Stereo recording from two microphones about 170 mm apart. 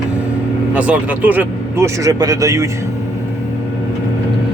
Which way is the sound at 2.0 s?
20° right (ahead or behind).